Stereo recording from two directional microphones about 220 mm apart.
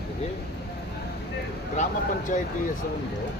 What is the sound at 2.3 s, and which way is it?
Speech, 35° left (ahead or behind).